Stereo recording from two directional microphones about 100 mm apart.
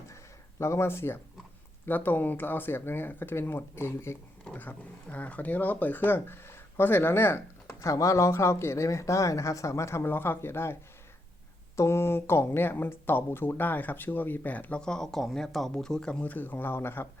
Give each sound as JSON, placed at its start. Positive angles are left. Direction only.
{"t": 0.6, "sound": "speech", "side_deg": 25}
{"t": 4.4, "sound": "speech", "side_deg": 15}
{"t": 11.8, "sound": "speech", "side_deg": 25}